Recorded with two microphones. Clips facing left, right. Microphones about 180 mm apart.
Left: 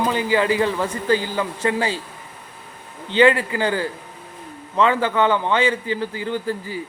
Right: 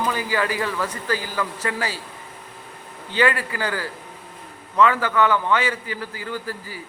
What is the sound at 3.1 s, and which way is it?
A man's voice, 25° left (ahead or behind).